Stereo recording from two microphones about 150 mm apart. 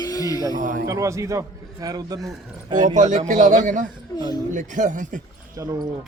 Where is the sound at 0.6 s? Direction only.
60° right (ahead or behind).